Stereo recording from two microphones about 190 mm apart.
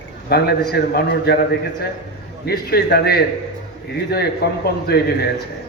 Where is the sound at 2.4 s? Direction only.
55° left (ahead or behind).